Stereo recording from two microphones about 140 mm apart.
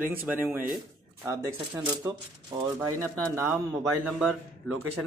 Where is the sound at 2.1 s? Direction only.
25° right (ahead or behind).